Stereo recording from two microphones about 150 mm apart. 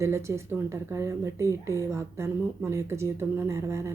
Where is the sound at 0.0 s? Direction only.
20° right (ahead or behind).